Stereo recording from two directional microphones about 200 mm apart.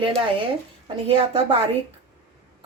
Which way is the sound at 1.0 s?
25° right (ahead or behind).